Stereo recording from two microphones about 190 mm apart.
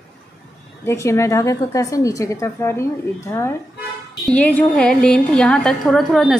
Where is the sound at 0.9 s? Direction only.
15° left (ahead or behind).